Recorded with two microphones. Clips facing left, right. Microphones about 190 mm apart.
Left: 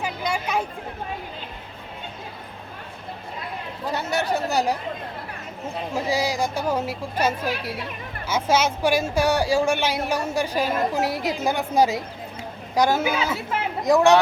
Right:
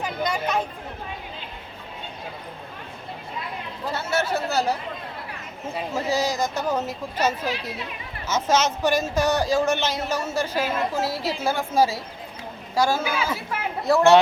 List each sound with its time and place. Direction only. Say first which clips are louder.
0.0 s a sound: right 1 dB; 10° left (ahead or behind)
3.9 s a woman's voice: left 1 dB; 15° left (ahead or behind)
5.9 s a woman's voice: even; 10° left (ahead or behind)